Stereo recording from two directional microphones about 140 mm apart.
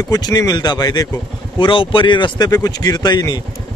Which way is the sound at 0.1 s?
25° left (ahead or behind).